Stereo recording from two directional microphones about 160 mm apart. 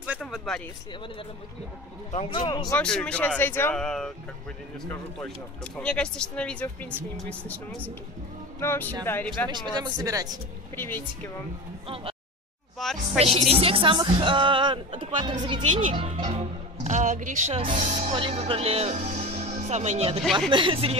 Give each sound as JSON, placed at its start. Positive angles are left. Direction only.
{"t": 0.2, "sound": "speech", "side_deg": 5}
{"t": 2.1, "sound": "speech", "side_deg": 35}
{"t": 2.7, "sound": "speech", "side_deg": 5}
{"t": 5.2, "sound": "speech", "side_deg": 5}
{"t": 9.5, "sound": "speech", "side_deg": -25}
{"t": 10.8, "sound": "speech", "side_deg": 10}
{"t": 11.9, "sound": "a sound", "side_deg": -35}
{"t": 12.8, "sound": "speech", "side_deg": 0}
{"t": 13.2, "sound": "a woman's voice", "side_deg": -40}
{"t": 15.7, "sound": "speech", "side_deg": -50}
{"t": 16.0, "sound": "a woman's voice", "side_deg": -40}